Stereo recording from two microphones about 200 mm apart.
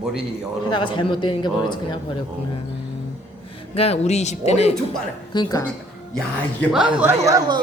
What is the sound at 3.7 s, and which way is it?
Speech, 30° left (ahead or behind).